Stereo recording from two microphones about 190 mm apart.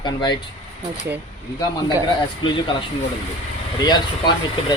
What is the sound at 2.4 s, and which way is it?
Speech, 25° left (ahead or behind).